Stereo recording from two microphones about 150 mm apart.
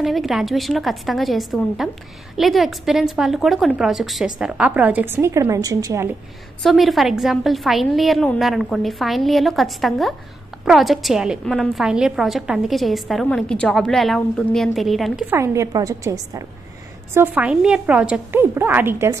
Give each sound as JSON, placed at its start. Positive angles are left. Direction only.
{"t": 0.0, "sound": "a woman's voice", "side_deg": 0}
{"t": 6.6, "sound": "a woman's voice", "side_deg": 0}
{"t": 15.2, "sound": "a woman's voice", "side_deg": -20}